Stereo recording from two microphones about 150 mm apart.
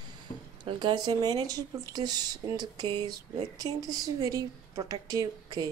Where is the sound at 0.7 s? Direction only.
30° right (ahead or behind).